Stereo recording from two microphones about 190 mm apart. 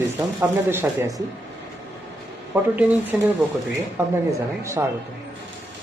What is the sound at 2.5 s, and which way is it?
Speech, 10° right (ahead or behind).